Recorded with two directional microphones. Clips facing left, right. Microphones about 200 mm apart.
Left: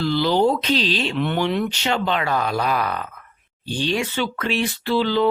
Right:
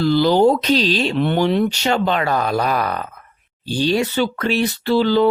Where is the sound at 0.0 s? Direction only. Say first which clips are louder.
Right 5 dB; 45° right (ahead or behind).